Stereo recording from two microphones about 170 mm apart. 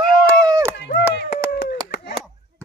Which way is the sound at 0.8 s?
90° left.